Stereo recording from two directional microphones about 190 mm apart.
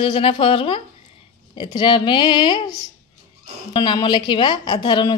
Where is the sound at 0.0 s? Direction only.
30° left (ahead or behind).